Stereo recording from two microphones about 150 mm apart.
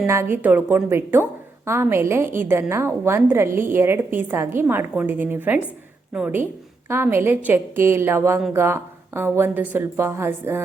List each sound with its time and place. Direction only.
0.1 s a woman's voice: 15° right (ahead or behind)